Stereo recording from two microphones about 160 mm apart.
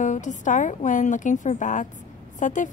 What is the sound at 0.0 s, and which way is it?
Speech, 50° left (ahead or behind).